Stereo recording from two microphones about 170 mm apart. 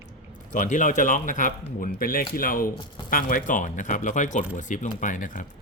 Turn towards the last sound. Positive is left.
turn(degrees=50)  # may be behind; listen again after turning